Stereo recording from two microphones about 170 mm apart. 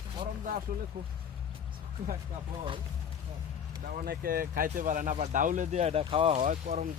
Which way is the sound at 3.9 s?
60° right (ahead or behind).